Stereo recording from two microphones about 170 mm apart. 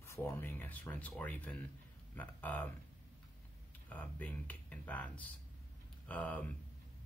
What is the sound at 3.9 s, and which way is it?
Speech, 10° left (ahead or behind).